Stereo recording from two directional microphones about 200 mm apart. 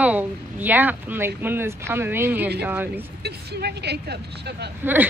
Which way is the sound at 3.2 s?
55° right (ahead or behind).